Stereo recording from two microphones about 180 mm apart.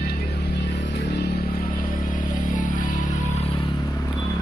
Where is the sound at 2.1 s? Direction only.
45° left (ahead or behind).